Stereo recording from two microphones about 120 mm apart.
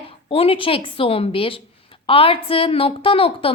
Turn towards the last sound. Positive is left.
turn(degrees=50)  # may be behind; listen again after turning